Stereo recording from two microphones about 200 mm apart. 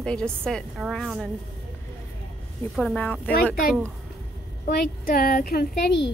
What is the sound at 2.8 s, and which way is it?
Speech, 5° left (ahead or behind).